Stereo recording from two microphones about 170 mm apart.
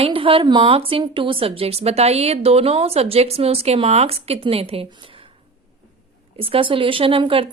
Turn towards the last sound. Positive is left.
turn(degrees=-30)  # may be behind; listen again after turning